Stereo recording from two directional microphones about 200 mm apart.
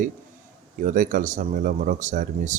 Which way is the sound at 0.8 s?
40° right (ahead or behind).